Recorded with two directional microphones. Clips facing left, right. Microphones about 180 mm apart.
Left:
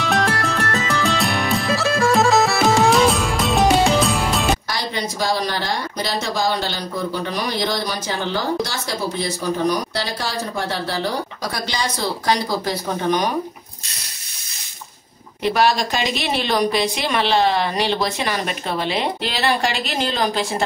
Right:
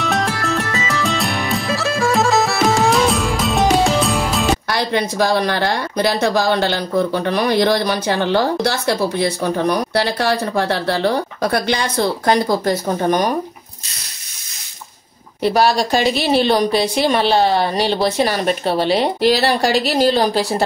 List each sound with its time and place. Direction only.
0.0 s music: centre (ahead or behind)
4.6 s speech: 60° right (ahead or behind)
15.4 s a woman's voice: 35° right (ahead or behind)